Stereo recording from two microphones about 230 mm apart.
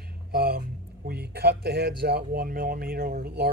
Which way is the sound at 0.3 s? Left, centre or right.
Right.